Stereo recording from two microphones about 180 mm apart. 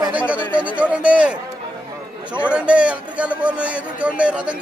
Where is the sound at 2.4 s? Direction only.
5° right (ahead or behind).